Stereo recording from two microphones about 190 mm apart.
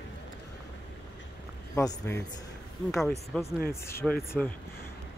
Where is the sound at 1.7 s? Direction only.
10° left (ahead or behind).